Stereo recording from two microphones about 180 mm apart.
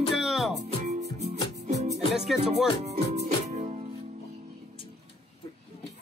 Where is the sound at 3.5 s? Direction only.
35° right (ahead or behind).